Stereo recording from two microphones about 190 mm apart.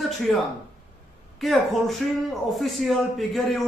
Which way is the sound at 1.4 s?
Centre (ahead or behind).